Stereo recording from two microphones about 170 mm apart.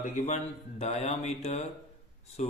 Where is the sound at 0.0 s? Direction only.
40° left (ahead or behind).